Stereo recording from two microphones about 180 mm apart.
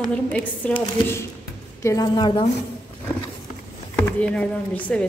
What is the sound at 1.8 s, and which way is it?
Speech, 20° left (ahead or behind).